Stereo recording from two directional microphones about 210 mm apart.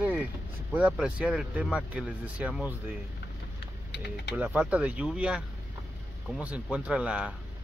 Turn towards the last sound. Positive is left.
turn(degrees=-5)  # may be behind; listen again after turning